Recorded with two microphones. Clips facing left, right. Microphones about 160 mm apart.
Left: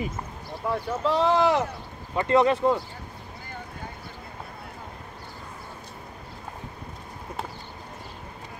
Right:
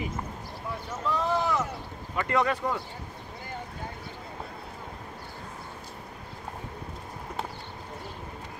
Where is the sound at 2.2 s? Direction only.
25° left (ahead or behind).